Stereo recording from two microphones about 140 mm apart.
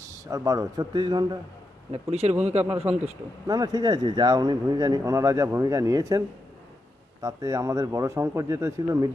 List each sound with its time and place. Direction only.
0.0 s speech: 25° right (ahead or behind)
1.9 s speech: 50° right (ahead or behind)
3.4 s speech: 25° right (ahead or behind)